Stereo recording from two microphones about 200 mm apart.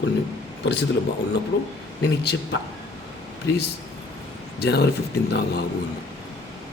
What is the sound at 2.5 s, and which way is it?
Speech, 70° left (ahead or behind).